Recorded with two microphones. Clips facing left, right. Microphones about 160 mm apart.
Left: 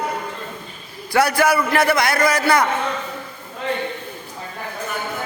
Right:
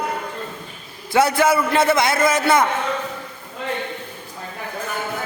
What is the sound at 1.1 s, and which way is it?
A man's voice, 25° right (ahead or behind).